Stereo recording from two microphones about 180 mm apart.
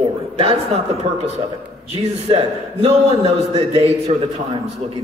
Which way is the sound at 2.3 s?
30° right (ahead or behind).